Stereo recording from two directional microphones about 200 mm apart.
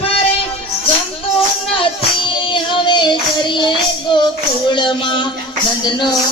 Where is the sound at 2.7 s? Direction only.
25° left (ahead or behind).